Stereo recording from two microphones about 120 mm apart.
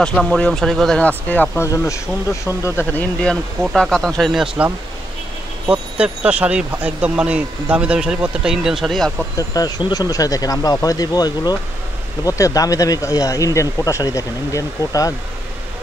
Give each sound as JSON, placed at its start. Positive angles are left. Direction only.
{"t": 0.0, "sound": "speech", "side_deg": 5}
{"t": 5.7, "sound": "speech", "side_deg": -10}
{"t": 9.4, "sound": "speech", "side_deg": 30}